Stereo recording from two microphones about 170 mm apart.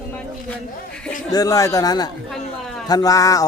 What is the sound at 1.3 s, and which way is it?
A man's voice, 20° left (ahead or behind).